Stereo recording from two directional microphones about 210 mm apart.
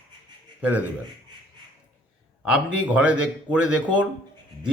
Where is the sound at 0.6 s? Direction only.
5° right (ahead or behind).